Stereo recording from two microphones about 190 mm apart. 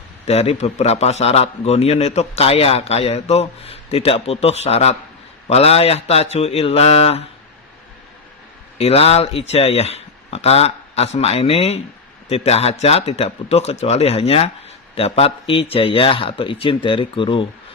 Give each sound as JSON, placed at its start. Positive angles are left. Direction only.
{"t": 0.3, "sound": "a man's voice", "side_deg": 35}
{"t": 8.8, "sound": "a man's voice", "side_deg": 30}